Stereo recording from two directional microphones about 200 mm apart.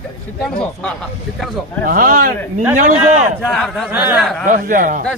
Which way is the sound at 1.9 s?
45° right (ahead or behind).